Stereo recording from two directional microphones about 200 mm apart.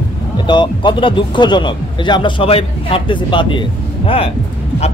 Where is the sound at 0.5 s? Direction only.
25° left (ahead or behind).